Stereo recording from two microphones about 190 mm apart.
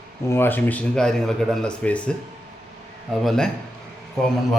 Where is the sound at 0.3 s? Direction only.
10° left (ahead or behind).